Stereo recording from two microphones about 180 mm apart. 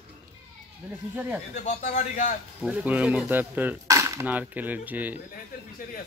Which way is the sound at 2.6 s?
10° right (ahead or behind).